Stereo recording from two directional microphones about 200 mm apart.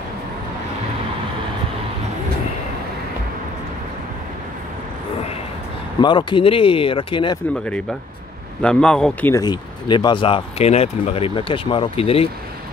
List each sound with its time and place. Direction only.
5.9 s speech: 25° left (ahead or behind)
7.5 s speech: 5° left (ahead or behind)
9.3 s speech: 20° left (ahead or behind)